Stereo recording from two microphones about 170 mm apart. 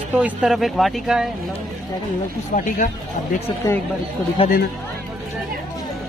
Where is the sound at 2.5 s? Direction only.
50° left (ahead or behind).